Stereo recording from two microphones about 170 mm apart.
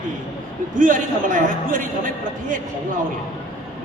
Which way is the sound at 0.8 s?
50° right (ahead or behind).